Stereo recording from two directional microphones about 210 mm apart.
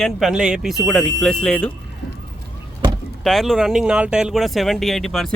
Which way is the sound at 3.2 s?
Centre (ahead or behind).